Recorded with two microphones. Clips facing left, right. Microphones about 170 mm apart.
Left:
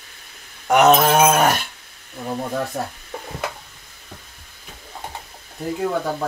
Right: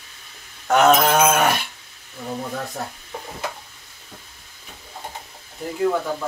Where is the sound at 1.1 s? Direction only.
35° left (ahead or behind).